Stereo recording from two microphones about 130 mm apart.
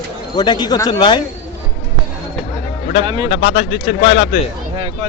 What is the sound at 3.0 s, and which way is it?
Speech, 40° right (ahead or behind).